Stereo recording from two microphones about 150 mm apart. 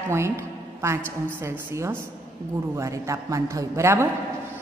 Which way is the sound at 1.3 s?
20° right (ahead or behind).